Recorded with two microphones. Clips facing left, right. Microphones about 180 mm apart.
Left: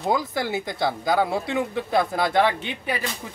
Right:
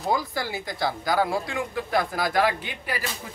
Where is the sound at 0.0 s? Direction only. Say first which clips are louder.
Left 2 dB; 20° left (ahead or behind).